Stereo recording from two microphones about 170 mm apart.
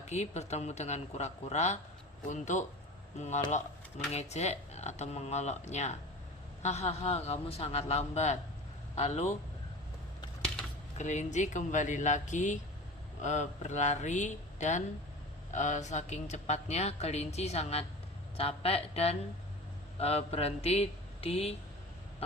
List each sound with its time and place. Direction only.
0.1 s speech: 40° left (ahead or behind)
10.9 s speech: 45° left (ahead or behind)